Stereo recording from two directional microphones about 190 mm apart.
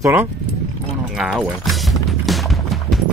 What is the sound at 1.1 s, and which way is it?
Music, 5° right (ahead or behind).